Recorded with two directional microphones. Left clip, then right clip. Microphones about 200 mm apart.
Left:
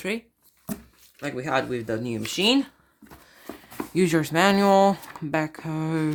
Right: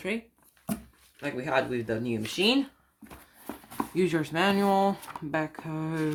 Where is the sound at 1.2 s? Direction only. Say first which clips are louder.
Left 2 dB; 55° left (ahead or behind).